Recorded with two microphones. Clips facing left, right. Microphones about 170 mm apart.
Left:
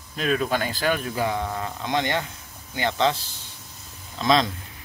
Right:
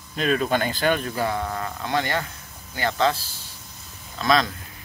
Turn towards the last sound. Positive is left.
turn(degrees=25)  # may be behind; listen again after turning